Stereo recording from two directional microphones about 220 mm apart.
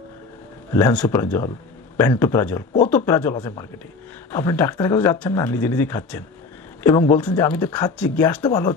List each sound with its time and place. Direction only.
0.7 s speech: 5° left (ahead or behind)
8.5 s speech: 15° left (ahead or behind)